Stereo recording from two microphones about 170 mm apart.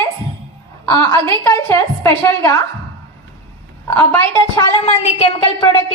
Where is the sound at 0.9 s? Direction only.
15° left (ahead or behind).